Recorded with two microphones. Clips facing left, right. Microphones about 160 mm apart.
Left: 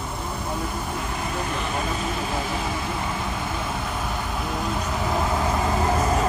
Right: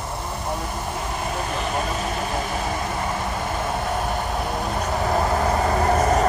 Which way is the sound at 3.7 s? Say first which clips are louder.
Right 4 dB; 45° right (ahead or behind).